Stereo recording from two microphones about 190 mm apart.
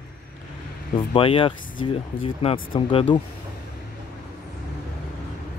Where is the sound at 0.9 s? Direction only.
30° left (ahead or behind).